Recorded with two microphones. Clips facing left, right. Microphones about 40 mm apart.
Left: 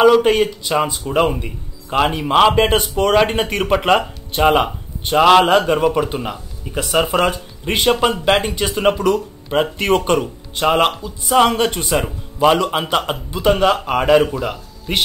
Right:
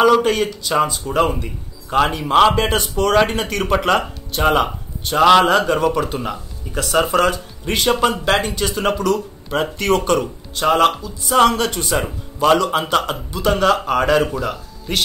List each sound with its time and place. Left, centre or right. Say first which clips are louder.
0.2 s speech: left 3 dB; centre
11.2 s speech: left 1 dB; centre